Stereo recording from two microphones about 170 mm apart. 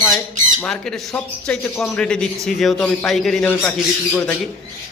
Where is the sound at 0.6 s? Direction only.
5° left (ahead or behind).